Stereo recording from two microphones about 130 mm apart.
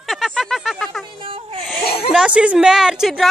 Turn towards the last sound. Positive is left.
turn(degrees=-5)  # may be behind; listen again after turning